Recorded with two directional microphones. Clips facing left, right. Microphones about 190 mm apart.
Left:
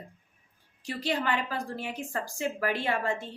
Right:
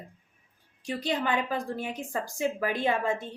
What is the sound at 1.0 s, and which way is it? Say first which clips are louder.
A woman's voice: right 1 dB; 20° right (ahead or behind).